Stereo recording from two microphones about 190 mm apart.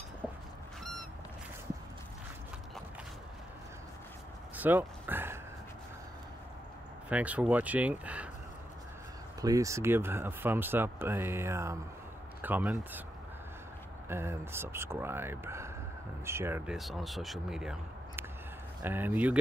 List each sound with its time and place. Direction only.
4.6 s a sound: 10° right (ahead or behind)
7.1 s speech: 5° right (ahead or behind)
9.4 s speech: 20° right (ahead or behind)
14.0 s speech: 15° right (ahead or behind)
16.7 s speech: centre (ahead or behind)